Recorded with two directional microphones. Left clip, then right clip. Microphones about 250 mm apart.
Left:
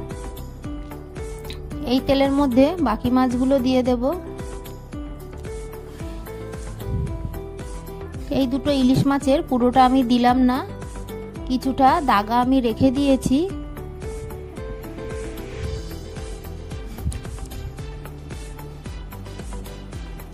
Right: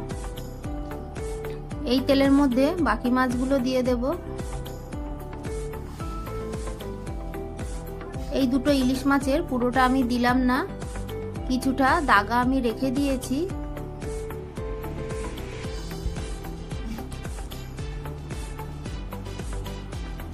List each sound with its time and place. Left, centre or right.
1.9 s a woman's voice: left
8.3 s a woman's voice: left